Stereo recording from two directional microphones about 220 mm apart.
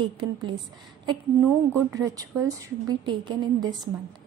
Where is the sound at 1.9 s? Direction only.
15° right (ahead or behind).